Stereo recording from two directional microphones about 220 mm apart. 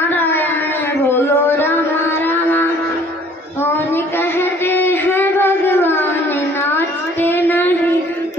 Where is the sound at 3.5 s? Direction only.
10° left (ahead or behind).